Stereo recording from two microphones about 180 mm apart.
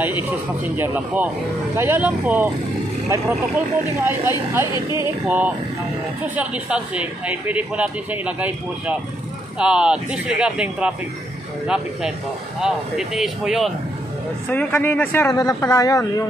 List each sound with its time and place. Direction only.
0.0 s speech: 10° right (ahead or behind); by 16.3 s 20° left (ahead or behind)